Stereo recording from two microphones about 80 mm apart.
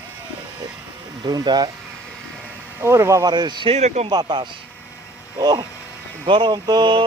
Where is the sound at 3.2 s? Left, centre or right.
Right.